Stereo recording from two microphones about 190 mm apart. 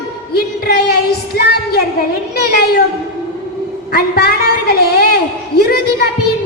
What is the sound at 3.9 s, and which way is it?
Speech, 55° left (ahead or behind).